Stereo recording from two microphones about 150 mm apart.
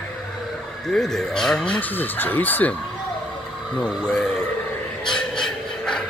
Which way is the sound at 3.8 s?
5° left (ahead or behind).